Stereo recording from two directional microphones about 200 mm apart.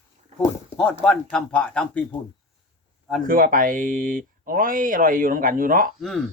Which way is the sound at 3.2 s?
45° right (ahead or behind).